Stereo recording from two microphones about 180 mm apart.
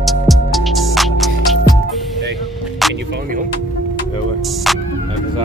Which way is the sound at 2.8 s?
Centre (ahead or behind).